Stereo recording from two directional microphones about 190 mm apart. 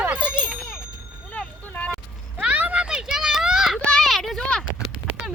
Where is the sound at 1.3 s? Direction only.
5° left (ahead or behind).